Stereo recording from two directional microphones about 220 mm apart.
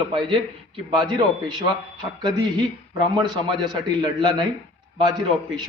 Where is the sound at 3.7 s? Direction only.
20° right (ahead or behind).